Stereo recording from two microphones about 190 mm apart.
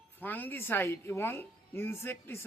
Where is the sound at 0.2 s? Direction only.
10° left (ahead or behind).